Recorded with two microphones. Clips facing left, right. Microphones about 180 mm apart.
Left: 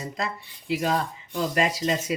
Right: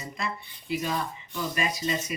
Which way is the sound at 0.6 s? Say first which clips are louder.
Left 5 dB; 85° left.